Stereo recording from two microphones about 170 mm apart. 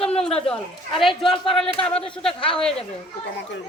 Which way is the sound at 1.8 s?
5° left (ahead or behind).